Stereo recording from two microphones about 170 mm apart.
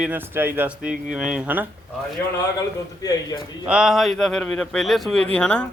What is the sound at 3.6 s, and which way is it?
Speech, 5° right (ahead or behind).